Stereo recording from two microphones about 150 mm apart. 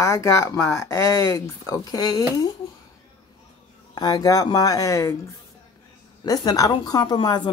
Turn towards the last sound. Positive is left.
turn(degrees=30)  # may be behind; listen again after turning